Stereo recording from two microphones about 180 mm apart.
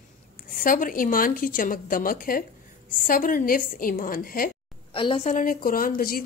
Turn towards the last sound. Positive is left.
turn(degrees=55)  # may be behind; listen again after turning